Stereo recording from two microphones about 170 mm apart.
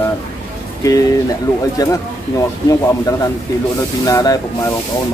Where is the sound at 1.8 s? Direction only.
20° left (ahead or behind).